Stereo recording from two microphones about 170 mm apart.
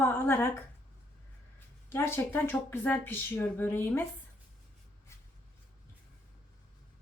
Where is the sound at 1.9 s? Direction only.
15° left (ahead or behind).